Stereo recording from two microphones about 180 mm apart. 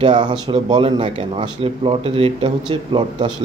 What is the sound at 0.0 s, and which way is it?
Speech, 25° right (ahead or behind).